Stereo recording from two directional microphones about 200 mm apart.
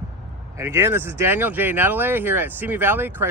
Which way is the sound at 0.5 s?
10° right (ahead or behind).